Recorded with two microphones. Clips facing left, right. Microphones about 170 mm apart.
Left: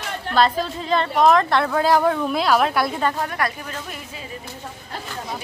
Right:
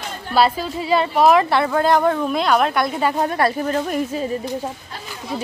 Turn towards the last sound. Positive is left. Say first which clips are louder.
# right 13 dB
turn(degrees=-40)  # may be behind; listen again after turning